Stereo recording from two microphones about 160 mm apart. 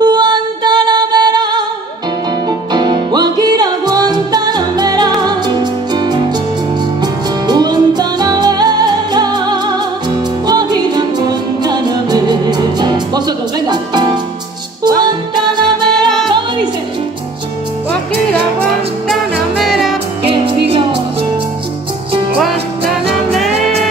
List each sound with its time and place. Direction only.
0.0 s music: 25° right (ahead or behind)
2.7 s music: 25° right (ahead or behind)
19.6 s music: centre (ahead or behind)
20.2 s music: 35° right (ahead or behind)